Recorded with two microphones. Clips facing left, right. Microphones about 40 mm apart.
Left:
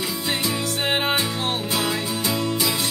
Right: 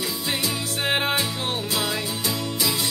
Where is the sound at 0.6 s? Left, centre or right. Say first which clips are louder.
Left 1 dB; centre.